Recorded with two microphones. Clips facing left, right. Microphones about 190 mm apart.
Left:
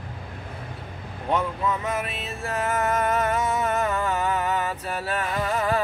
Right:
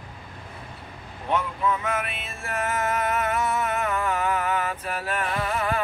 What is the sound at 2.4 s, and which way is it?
Music, 35° left (ahead or behind).